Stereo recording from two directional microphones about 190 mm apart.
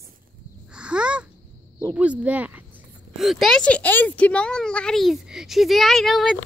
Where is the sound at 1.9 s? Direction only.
5° right (ahead or behind).